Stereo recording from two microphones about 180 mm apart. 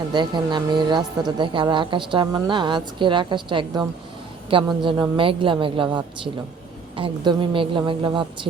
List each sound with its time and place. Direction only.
0.1 s a woman's voice: 25° right (ahead or behind)